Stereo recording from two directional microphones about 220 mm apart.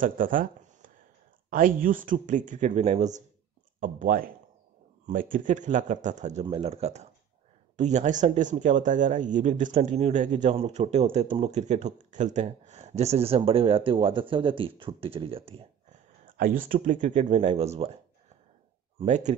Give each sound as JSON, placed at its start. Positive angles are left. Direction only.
{"t": 0.0, "sound": "a sound", "side_deg": -40}
{"t": 1.5, "sound": "a man's voice", "side_deg": -40}
{"t": 16.3, "sound": "a man's voice", "side_deg": -40}
{"t": 18.9, "sound": "a man's voice", "side_deg": -30}